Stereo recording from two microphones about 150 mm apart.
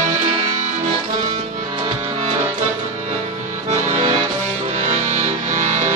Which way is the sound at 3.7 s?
45° right (ahead or behind).